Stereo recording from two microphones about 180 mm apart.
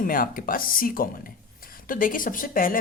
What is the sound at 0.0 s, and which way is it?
Speech, 50° left (ahead or behind).